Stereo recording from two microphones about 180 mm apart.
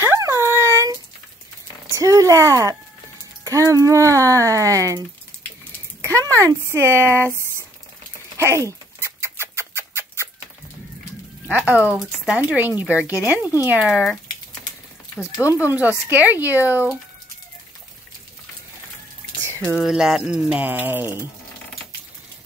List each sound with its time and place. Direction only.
0.0 s dog: 15° right (ahead or behind)
2.0 s speech: 20° right (ahead or behind)
8.4 s chicken: 15° right (ahead or behind)
11.4 s speech: 5° right (ahead or behind)
15.4 s speech: 10° right (ahead or behind)
19.6 s speech: 5° left (ahead or behind)